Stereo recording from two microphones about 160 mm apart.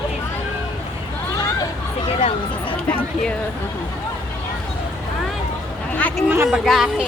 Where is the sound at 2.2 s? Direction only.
35° left (ahead or behind).